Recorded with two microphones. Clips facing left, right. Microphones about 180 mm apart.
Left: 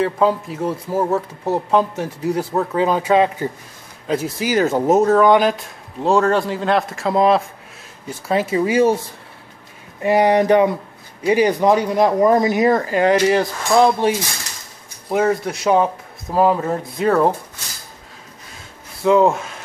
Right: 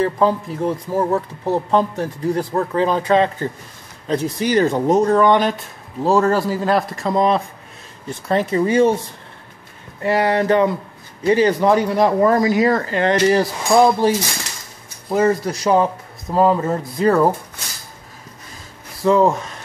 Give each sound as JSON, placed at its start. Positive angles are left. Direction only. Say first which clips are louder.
{"t": 0.0, "sound": "speech", "louder": "even", "side_deg": 5}
{"t": 10.0, "sound": "speech", "louder": "left 3 dB", "side_deg": 15}
{"t": 13.4, "sound": "a sound", "louder": "right 1 dB", "side_deg": -10}
{"t": 15.0, "sound": "speech", "louder": "right 1 dB", "side_deg": 0}
{"t": 18.9, "sound": "speech", "louder": "left 1 dB", "side_deg": 0}